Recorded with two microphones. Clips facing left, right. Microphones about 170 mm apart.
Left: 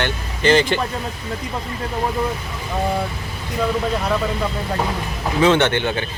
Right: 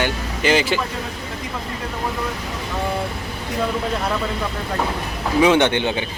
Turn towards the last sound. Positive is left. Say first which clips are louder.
# even
turn(degrees=-15)  # may be behind; listen again after turning